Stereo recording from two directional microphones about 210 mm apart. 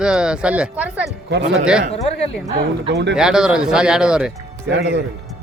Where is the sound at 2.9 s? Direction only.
55° right (ahead or behind).